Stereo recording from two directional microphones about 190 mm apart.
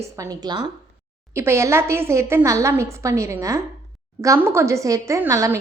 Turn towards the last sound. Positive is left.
turn(degrees=-15)  # may be behind; listen again after turning